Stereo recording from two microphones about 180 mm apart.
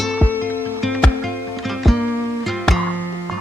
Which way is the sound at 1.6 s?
Centre (ahead or behind).